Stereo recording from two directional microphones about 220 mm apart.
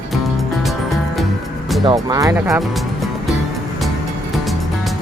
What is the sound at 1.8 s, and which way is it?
Speech, 15° right (ahead or behind).